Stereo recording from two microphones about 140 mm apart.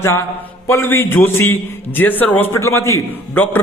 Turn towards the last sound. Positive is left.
turn(degrees=15)  # may be behind; listen again after turning